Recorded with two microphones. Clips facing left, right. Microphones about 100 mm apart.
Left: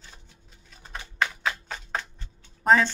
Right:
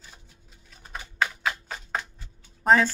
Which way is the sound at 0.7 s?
Centre (ahead or behind).